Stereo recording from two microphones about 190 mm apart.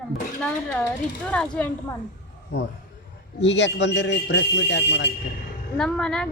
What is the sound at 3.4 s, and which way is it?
Speech, 65° left (ahead or behind).